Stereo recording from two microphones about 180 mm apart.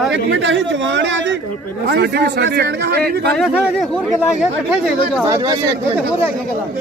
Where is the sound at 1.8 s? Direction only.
60° right (ahead or behind).